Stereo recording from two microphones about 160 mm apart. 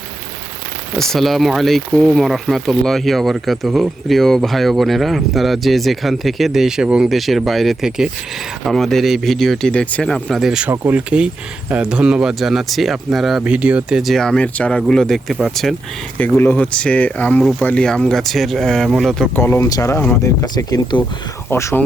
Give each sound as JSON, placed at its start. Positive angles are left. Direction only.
{"t": 0.9, "sound": "speech", "side_deg": 0}
{"t": 19.4, "sound": "speech", "side_deg": 15}